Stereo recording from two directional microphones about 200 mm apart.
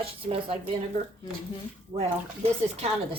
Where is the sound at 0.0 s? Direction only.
30° right (ahead or behind).